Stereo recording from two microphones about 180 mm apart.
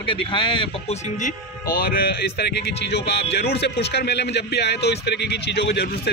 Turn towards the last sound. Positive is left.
turn(degrees=65)  # may be behind; listen again after turning